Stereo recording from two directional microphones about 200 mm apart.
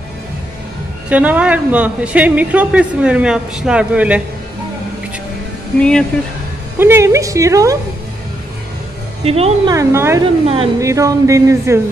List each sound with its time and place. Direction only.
1.0 s a woman's voice: 5° right (ahead or behind)
5.8 s speech: 5° left (ahead or behind)
6.8 s a woman's voice: 10° right (ahead or behind)
9.2 s speech: 30° right (ahead or behind)
9.8 s a woman's voice: 15° right (ahead or behind)